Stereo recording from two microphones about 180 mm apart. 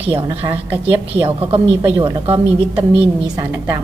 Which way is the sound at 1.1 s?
30° right (ahead or behind).